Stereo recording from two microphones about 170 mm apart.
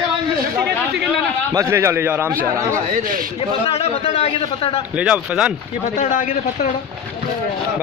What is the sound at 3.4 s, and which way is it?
A man's voice, 35° left (ahead or behind).